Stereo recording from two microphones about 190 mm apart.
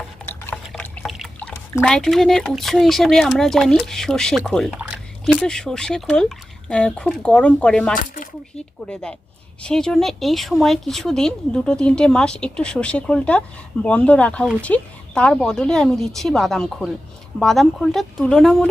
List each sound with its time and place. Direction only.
0.2 s a sound: 5° left (ahead or behind)
0.5 s speech: 5° left (ahead or behind)
7.9 s speech: 45° left (ahead or behind)
8.9 s speech: 5° left (ahead or behind)